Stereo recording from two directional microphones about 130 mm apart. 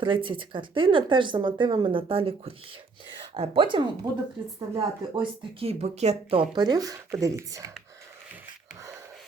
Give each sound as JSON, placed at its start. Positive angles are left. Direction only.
{"t": 0.0, "sound": "speech", "side_deg": -40}
{"t": 6.5, "sound": "speech", "side_deg": -35}